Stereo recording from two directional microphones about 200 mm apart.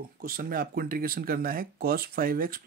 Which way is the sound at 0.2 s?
45° right (ahead or behind).